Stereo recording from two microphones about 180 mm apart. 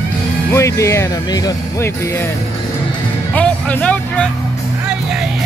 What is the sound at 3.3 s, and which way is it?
Music, 5° left (ahead or behind).